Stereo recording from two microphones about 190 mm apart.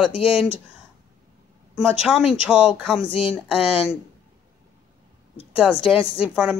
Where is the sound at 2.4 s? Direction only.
5° right (ahead or behind).